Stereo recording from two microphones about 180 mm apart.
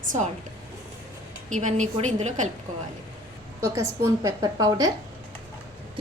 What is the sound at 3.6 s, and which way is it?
A woman's voice, 15° right (ahead or behind).